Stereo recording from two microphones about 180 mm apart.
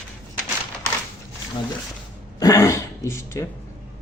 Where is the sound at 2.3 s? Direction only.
20° left (ahead or behind).